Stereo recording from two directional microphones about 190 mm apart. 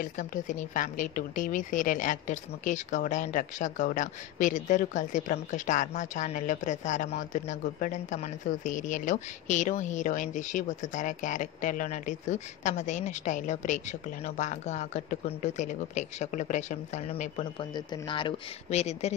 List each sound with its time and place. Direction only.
0.0 s speech: 45° left (ahead or behind)